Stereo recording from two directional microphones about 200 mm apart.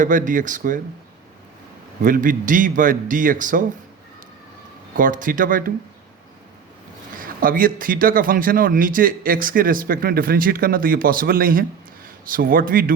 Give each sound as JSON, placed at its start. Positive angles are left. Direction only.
{"t": 0.0, "sound": "a man's voice", "side_deg": -40}
{"t": 2.0, "sound": "a man's voice", "side_deg": -40}
{"t": 4.9, "sound": "a man's voice", "side_deg": -40}
{"t": 7.2, "sound": "a man's voice", "side_deg": -45}